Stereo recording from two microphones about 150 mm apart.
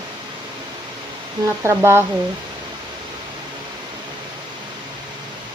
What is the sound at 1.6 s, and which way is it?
Speech, 15° right (ahead or behind).